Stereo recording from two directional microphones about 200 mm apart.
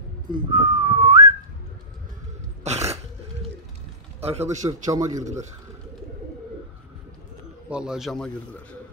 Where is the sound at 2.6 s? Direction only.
35° right (ahead or behind).